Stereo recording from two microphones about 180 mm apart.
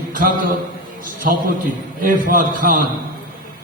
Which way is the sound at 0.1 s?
50° right (ahead or behind).